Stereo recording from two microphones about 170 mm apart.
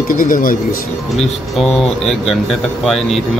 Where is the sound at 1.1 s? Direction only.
Centre (ahead or behind).